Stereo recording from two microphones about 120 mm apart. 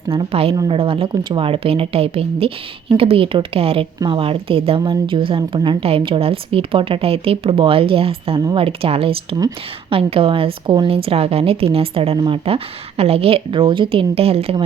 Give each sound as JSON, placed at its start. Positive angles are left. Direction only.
{"t": 0.1, "sound": "a woman's voice", "side_deg": -50}